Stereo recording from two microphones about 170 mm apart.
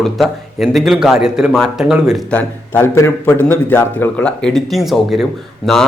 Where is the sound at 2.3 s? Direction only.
15° left (ahead or behind).